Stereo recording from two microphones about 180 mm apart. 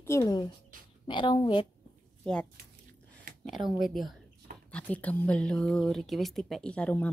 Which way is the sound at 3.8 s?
Centre (ahead or behind).